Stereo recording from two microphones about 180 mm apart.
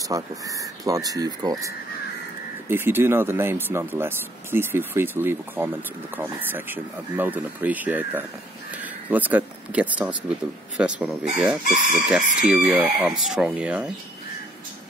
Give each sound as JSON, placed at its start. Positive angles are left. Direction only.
{"t": 0.1, "sound": "speech", "side_deg": -20}
{"t": 2.7, "sound": "speech", "side_deg": -10}